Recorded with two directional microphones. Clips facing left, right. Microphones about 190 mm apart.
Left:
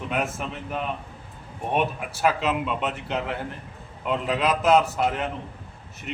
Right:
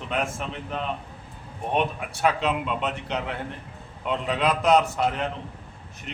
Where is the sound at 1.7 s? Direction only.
5° left (ahead or behind).